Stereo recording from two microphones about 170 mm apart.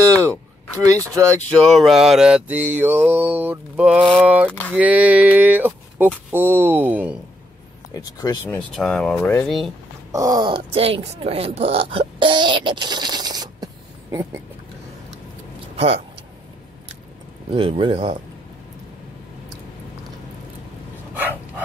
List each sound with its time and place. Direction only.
0.2 s a man's voice: 20° right (ahead or behind)
1.5 s mantra: centre (ahead or behind)
4.5 s speech: 10° left (ahead or behind)
4.7 s mantra: 10° right (ahead or behind)
7.9 s speech: 20° left (ahead or behind)
8.5 s speech: 5° left (ahead or behind)
10.1 s speech: 20° right (ahead or behind)
15.7 s vehicle: 35° right (ahead or behind)
17.5 s speech: 30° right (ahead or behind)
21.1 s dog: 10° right (ahead or behind)